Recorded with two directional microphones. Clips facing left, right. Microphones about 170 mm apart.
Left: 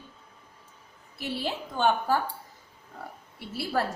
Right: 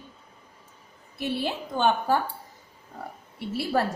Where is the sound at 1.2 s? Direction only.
20° right (ahead or behind).